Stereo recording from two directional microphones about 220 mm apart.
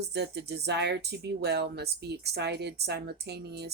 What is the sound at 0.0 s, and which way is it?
Speech, 50° right (ahead or behind).